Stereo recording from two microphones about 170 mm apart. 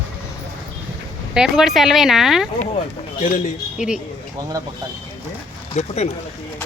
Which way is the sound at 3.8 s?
5° right (ahead or behind).